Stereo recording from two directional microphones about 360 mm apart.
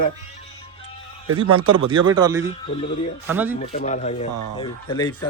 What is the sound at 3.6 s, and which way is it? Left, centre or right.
Speech, centre.